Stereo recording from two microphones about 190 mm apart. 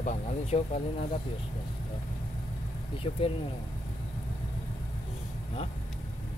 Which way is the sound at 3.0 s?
30° left (ahead or behind).